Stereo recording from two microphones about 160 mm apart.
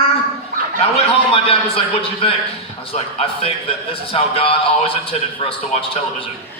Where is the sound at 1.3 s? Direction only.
35° left (ahead or behind).